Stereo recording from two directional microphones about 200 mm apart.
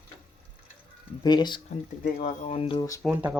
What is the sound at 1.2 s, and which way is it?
Speech, 20° left (ahead or behind).